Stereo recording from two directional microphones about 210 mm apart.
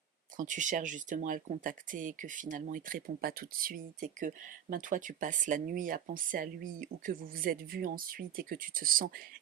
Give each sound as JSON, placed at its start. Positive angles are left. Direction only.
{"t": 0.3, "sound": "speech", "side_deg": -35}